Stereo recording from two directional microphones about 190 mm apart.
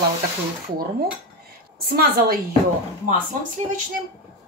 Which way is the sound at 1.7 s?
55° right (ahead or behind).